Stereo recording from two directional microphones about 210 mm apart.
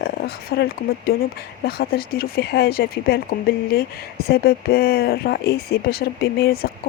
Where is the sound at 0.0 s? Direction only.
50° left (ahead or behind).